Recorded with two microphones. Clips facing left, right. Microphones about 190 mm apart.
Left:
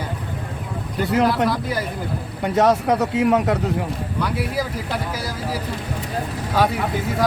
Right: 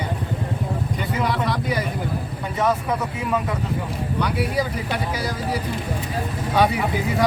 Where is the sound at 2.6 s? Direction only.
75° left (ahead or behind).